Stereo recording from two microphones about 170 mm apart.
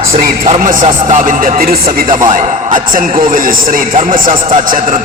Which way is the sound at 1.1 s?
50° right (ahead or behind).